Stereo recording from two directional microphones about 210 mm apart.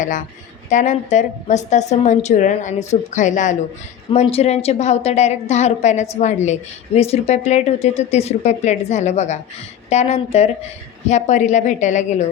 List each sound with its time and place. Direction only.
0.7 s a woman's voice: 35° left (ahead or behind)